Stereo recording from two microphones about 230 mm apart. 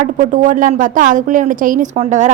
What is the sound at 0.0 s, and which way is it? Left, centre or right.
A woman's voice, right.